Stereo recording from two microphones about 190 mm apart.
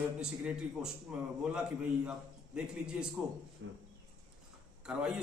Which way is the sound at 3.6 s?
75° right (ahead or behind).